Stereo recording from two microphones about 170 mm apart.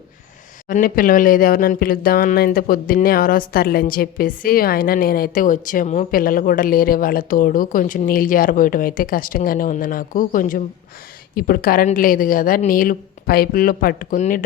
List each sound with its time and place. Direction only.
0.7 s speech: 55° left (ahead or behind)